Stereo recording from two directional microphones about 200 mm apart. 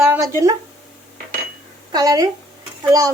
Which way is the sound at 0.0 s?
15° right (ahead or behind).